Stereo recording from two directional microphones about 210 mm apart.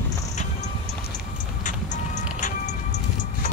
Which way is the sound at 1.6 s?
35° left (ahead or behind).